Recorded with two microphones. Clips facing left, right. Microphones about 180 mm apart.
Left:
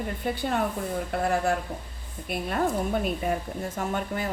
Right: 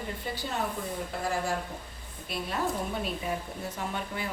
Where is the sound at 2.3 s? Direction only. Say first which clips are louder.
Left 5 dB; 55° left (ahead or behind).